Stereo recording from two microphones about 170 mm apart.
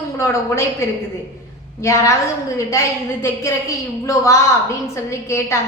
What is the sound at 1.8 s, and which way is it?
A woman's voice, 15° left (ahead or behind).